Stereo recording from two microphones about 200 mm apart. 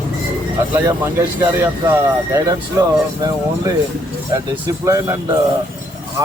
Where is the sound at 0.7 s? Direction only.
10° right (ahead or behind).